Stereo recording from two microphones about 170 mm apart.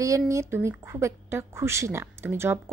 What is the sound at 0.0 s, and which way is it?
A woman's voice, 20° right (ahead or behind).